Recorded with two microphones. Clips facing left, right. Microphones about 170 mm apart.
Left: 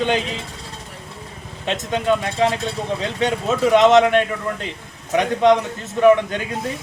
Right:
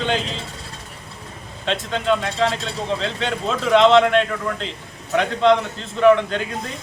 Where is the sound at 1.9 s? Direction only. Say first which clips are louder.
Left 2 dB; 15° left (ahead or behind).